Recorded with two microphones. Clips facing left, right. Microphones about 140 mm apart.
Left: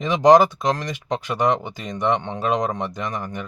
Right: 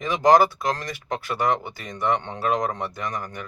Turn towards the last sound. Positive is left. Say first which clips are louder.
# left 3 dB
turn(degrees=20)  # may be behind; listen again after turning